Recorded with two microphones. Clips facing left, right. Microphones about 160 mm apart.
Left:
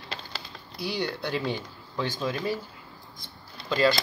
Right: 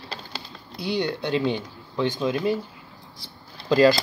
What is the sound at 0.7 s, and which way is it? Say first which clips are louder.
Speech: right 5 dB; 25° right (ahead or behind).